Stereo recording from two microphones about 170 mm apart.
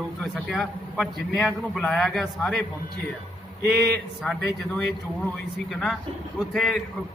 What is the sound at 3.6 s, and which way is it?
Speech, 70° right (ahead or behind).